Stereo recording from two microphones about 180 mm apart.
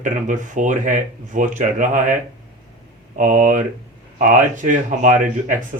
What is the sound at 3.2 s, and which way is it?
Speech, 45° right (ahead or behind).